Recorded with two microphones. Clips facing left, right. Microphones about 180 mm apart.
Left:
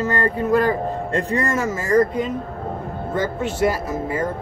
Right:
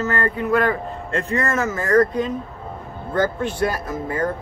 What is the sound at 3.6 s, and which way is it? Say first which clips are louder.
Speech: left 4 dB; 25° left (ahead or behind).